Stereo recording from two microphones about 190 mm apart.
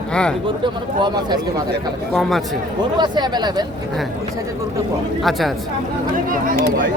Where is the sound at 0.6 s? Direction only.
25° right (ahead or behind).